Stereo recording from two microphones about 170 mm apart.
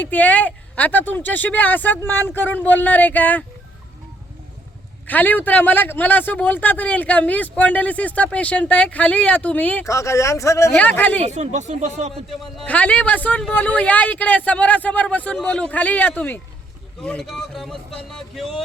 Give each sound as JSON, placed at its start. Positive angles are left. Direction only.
{"t": 0.0, "sound": "a man's voice", "side_deg": 10}
{"t": 5.0, "sound": "a man's voice", "side_deg": 10}
{"t": 11.2, "sound": "speech", "side_deg": -40}
{"t": 12.6, "sound": "a man's voice", "side_deg": 10}